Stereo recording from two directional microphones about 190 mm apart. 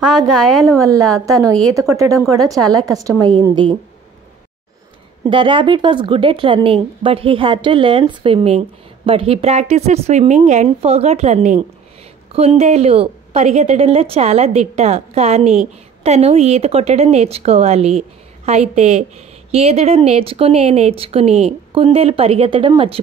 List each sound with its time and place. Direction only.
0.3 s a woman's voice: centre (ahead or behind)
0.7 s speech: 15° right (ahead or behind)
1.5 s a woman's voice: 5° left (ahead or behind)
1.8 s speech: 15° right (ahead or behind)
5.3 s speech: 25° right (ahead or behind)